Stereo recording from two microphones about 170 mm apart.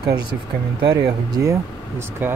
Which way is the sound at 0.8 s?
20° right (ahead or behind).